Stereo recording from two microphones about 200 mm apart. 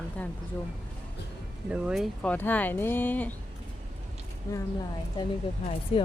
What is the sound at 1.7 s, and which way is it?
Speech, centre (ahead or behind).